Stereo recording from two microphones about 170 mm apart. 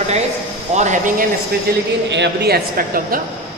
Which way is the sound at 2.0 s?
90° right.